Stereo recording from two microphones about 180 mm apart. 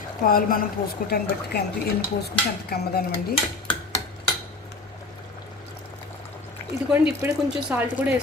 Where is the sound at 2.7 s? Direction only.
60° left (ahead or behind).